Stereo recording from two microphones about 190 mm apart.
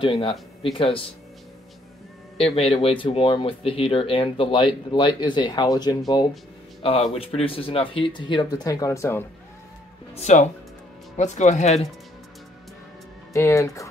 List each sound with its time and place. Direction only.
0.0 s speech: 30° left (ahead or behind)
2.3 s speech: 30° left (ahead or behind); by 9.2 s 15° left (ahead or behind)
10.1 s speech: 35° left (ahead or behind)
13.3 s speech: 15° left (ahead or behind)